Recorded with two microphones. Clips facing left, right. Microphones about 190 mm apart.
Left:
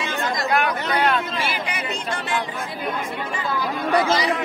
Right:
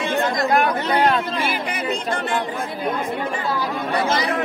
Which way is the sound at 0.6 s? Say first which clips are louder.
Right 3 dB; 35° right (ahead or behind).